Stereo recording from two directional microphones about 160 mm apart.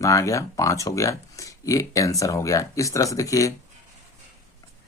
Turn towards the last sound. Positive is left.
turn(degrees=20)  # may be behind; listen again after turning